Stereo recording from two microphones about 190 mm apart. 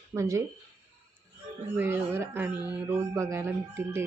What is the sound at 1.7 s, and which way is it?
Speech, 10° right (ahead or behind).